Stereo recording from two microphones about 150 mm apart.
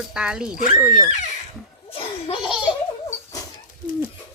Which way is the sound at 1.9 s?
40° left (ahead or behind).